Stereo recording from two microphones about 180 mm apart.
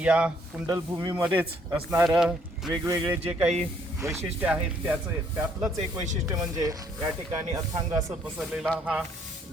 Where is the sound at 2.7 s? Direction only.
15° right (ahead or behind).